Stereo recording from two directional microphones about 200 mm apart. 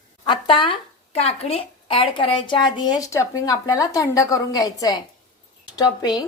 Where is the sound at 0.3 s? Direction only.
25° left (ahead or behind).